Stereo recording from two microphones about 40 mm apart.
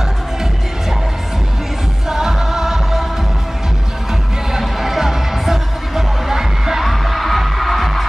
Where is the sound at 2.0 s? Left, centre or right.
Centre.